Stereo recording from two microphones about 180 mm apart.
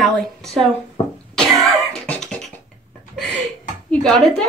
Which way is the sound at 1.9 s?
5° left (ahead or behind).